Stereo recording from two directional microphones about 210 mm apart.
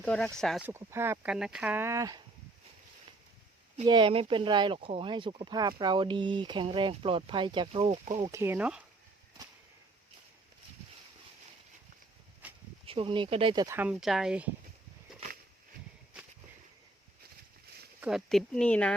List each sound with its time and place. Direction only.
0.0 s speech: 5° left (ahead or behind)
0.7 s speech: 10° right (ahead or behind)
3.8 s speech: 20° right (ahead or behind)
8.1 s speech: 15° right (ahead or behind)
12.4 s a sound: 5° right (ahead or behind)
12.8 s speech: 25° right (ahead or behind); by 14.5 s 5° right (ahead or behind)
18.0 s speech: centre (ahead or behind)